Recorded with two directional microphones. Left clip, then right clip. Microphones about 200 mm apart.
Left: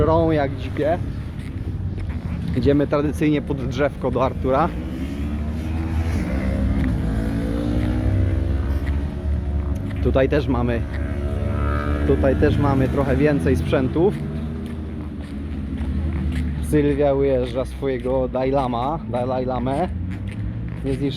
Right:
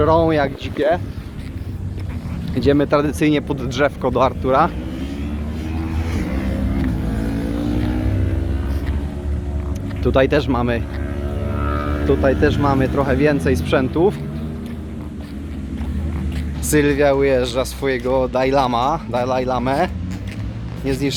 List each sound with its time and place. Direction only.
0.0 s speech: 5° right (ahead or behind)
0.8 s speech: 25° right (ahead or behind)
2.6 s speech: 5° right (ahead or behind)
6.1 s a sound: 25° left (ahead or behind)
7.1 s vehicle: 10° left (ahead or behind)
10.0 s speech: 15° right (ahead or behind)
11.5 s music: 10° left (ahead or behind)
12.0 s speech: centre (ahead or behind)
16.6 s speech: centre (ahead or behind)